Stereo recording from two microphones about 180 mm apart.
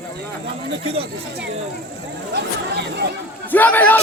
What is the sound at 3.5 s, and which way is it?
Speech, 10° left (ahead or behind).